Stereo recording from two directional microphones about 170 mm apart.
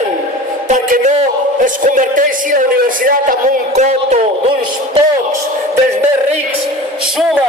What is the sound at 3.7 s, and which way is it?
Speech, 45° right (ahead or behind).